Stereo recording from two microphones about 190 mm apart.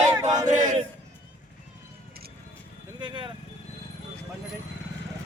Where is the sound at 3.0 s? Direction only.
25° right (ahead or behind).